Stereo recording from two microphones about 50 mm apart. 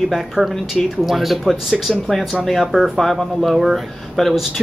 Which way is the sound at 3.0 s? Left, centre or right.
Centre.